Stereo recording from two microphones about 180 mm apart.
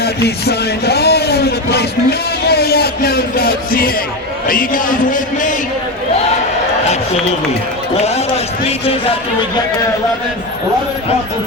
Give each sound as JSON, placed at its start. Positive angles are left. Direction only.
{"t": 0.0, "sound": "speech", "side_deg": 65}
{"t": 6.9, "sound": "speech", "side_deg": 35}